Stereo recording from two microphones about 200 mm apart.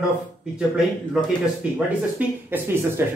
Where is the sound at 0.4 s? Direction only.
Centre (ahead or behind).